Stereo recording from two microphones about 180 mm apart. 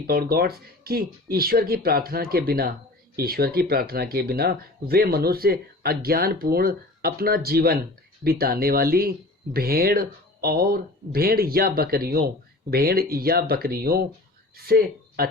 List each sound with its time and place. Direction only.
0.1 s speech: 55° right (ahead or behind)